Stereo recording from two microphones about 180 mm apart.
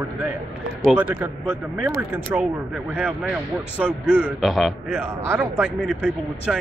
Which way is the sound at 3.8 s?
10° right (ahead or behind).